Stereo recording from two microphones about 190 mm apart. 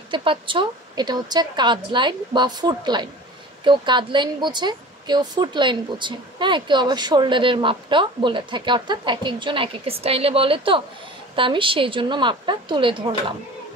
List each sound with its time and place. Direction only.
0.1 s speech: 25° right (ahead or behind)